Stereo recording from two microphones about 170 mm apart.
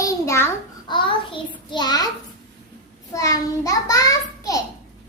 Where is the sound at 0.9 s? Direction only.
30° left (ahead or behind).